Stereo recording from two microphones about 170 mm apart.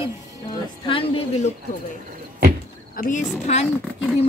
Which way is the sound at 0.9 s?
35° left (ahead or behind).